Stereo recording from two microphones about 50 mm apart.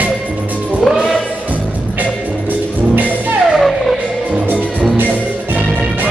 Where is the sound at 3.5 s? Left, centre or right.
Centre.